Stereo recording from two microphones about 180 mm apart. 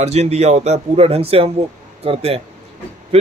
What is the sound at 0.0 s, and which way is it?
Speech, 35° right (ahead or behind).